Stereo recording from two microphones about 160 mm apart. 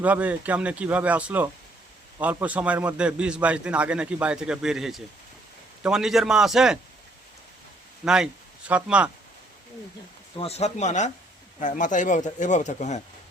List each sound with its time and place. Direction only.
0.0 s a man's voice: 10° right (ahead or behind)
8.0 s speech: 5° right (ahead or behind)
10.3 s speech: 40° left (ahead or behind)